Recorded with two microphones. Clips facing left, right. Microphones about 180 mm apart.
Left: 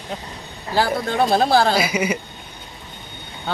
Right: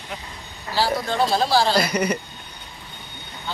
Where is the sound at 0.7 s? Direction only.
55° left (ahead or behind).